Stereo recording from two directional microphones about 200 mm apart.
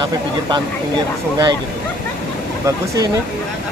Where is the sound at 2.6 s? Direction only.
20° right (ahead or behind).